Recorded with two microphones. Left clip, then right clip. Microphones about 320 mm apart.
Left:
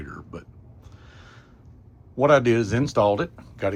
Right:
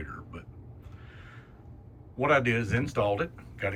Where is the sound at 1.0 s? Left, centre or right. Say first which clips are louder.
Left 2 dB; centre.